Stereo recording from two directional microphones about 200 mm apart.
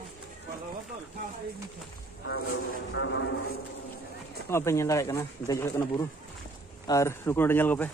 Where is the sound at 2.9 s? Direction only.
70° left (ahead or behind).